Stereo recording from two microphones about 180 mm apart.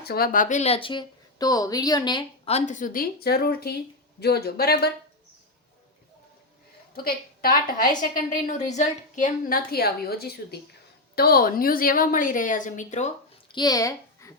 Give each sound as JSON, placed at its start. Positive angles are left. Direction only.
{"t": 0.0, "sound": "speech", "side_deg": 60}
{"t": 2.5, "sound": "speech", "side_deg": 40}
{"t": 6.9, "sound": "a woman's voice", "side_deg": 55}
{"t": 13.5, "sound": "speech", "side_deg": 25}